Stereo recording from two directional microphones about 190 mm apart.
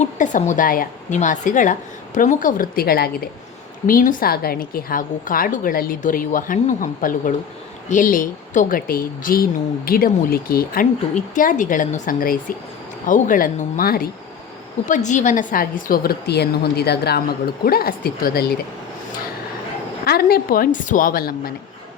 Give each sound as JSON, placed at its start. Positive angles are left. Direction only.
{"t": 0.0, "sound": "a woman's voice", "side_deg": 40}
{"t": 14.8, "sound": "a woman's voice", "side_deg": 40}
{"t": 20.1, "sound": "a woman's voice", "side_deg": 55}